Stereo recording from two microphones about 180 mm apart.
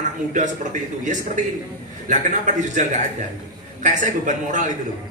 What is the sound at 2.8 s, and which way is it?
A man's voice, 40° right (ahead or behind).